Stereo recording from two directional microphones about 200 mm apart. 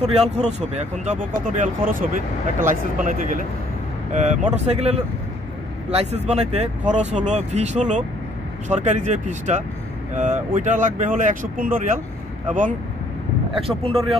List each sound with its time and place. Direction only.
0.0 s speech: 30° right (ahead or behind)
13.6 s speech: 30° right (ahead or behind)